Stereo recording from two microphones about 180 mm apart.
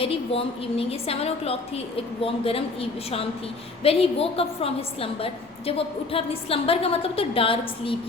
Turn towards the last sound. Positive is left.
turn(degrees=30)  # may be behind; listen again after turning